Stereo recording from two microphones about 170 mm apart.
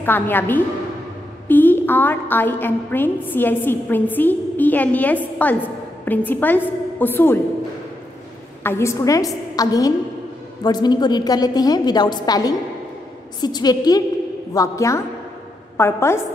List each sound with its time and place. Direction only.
0.0 s a woman's voice: 10° left (ahead or behind)
8.6 s a woman's voice: 15° left (ahead or behind)